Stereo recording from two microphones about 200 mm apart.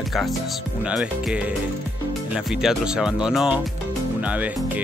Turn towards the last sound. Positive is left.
turn(degrees=-5)  # may be behind; listen again after turning